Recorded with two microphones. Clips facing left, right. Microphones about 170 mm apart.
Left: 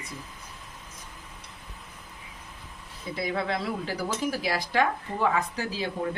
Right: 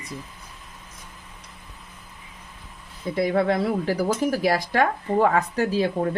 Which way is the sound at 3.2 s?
45° right (ahead or behind).